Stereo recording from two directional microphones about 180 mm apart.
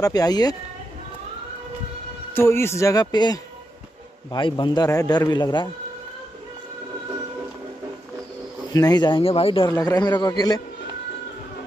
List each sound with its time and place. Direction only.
0.0 s a man's voice: 20° left (ahead or behind)
2.3 s a man's voice: 15° left (ahead or behind)
8.7 s a man's voice: 20° left (ahead or behind)
9.7 s a man's voice: 20° left (ahead or behind)